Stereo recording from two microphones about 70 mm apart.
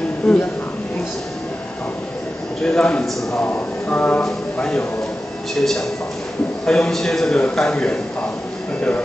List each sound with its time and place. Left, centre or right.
0.2 s a man's voice: centre
2.6 s a man's voice: centre